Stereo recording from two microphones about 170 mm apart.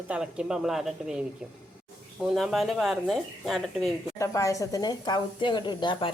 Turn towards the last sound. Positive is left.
turn(degrees=25)  # may be behind; listen again after turning